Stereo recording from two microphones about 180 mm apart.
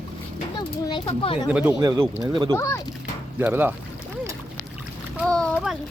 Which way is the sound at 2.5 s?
15° left (ahead or behind).